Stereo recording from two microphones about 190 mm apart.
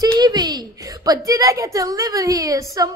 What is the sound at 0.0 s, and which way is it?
A woman's voice, 20° right (ahead or behind).